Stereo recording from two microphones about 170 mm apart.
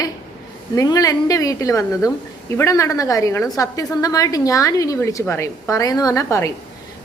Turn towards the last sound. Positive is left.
turn(degrees=20)  # may be behind; listen again after turning